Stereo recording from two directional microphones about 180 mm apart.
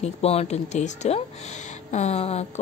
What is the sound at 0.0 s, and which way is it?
A woman's voice, 35° left (ahead or behind).